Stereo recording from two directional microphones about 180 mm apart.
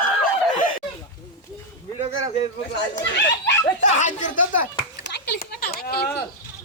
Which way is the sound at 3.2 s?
25° left (ahead or behind).